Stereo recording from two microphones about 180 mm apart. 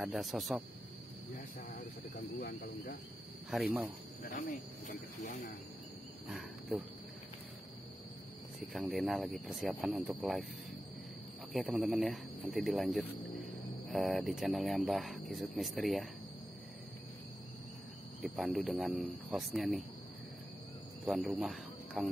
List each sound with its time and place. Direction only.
0.0 s speech: centre (ahead or behind)
2.3 s speech: 50° left (ahead or behind)
3.4 s speech: centre (ahead or behind)
4.2 s speech: 50° left (ahead or behind)
6.2 s speech: 5° right (ahead or behind)
8.5 s speech: centre (ahead or behind)
11.5 s speech: centre (ahead or behind)
18.2 s speech: centre (ahead or behind)
21.0 s speech: centre (ahead or behind)